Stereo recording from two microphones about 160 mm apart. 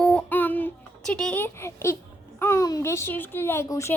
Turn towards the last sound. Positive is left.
turn(degrees=20)  # may be behind; listen again after turning